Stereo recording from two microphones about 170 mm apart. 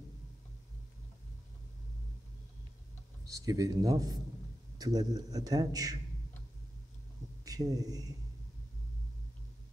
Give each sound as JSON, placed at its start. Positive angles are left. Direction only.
{"t": 3.3, "sound": "a man's voice", "side_deg": -20}
{"t": 7.4, "sound": "speech", "side_deg": -20}